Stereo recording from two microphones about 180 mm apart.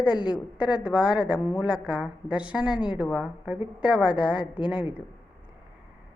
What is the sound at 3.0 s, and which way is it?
A woman's voice, 5° right (ahead or behind).